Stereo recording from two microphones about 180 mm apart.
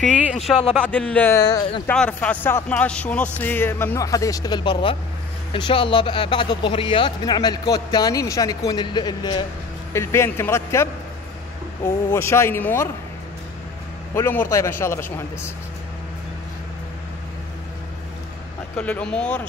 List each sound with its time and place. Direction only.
0.7 s a man's voice: 5° left (ahead or behind); by 9.4 s 25° left (ahead or behind)
9.9 s a man's voice: 15° left (ahead or behind)
12.1 s a man's voice: 15° left (ahead or behind)
14.1 s a man's voice: 15° left (ahead or behind)
18.8 s a man's voice: 5° left (ahead or behind)